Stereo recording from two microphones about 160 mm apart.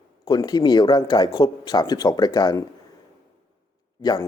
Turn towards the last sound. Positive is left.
turn(degrees=25)  # may be behind; listen again after turning